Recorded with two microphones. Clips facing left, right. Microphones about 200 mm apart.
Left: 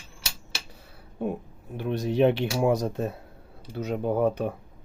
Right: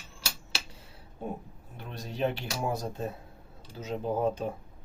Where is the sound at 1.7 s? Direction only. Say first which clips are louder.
Left 14 dB; 70° left (ahead or behind); by 3.0 s 85° left.